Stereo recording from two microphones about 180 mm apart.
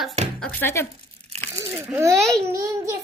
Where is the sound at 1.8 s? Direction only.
10° right (ahead or behind).